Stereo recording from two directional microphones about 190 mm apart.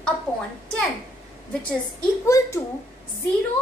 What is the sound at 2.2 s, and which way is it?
Speech, 15° left (ahead or behind).